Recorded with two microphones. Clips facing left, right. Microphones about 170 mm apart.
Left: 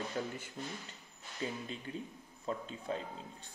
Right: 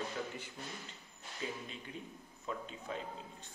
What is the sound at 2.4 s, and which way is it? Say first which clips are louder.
A man's voice: left 4 dB; 35° left (ahead or behind).